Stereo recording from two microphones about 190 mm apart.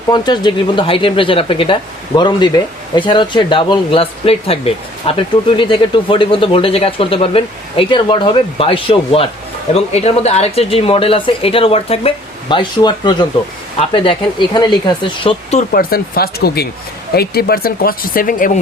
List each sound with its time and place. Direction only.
0.1 s speech: 25° left (ahead or behind)
15.7 s speech: 50° left (ahead or behind)